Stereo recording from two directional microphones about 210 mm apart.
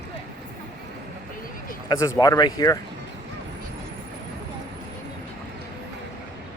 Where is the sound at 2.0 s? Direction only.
15° left (ahead or behind).